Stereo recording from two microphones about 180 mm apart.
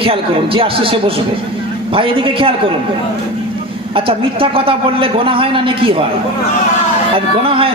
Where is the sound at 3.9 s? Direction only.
30° right (ahead or behind).